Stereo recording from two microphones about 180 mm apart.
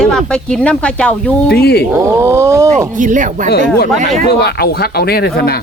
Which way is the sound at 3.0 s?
45° right (ahead or behind).